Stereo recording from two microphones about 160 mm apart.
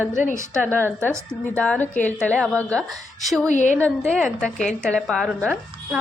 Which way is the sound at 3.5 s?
50° left (ahead or behind).